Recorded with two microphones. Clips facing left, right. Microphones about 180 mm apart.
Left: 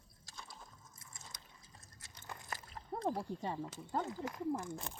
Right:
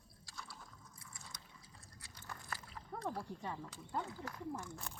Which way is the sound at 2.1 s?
20° left (ahead or behind).